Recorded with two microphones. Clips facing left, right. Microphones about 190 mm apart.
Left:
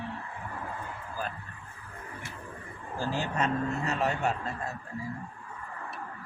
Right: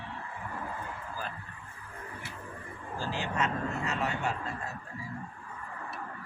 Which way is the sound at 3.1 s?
40° left (ahead or behind).